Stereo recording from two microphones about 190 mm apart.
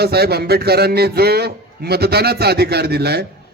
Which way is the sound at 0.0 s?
55° right (ahead or behind).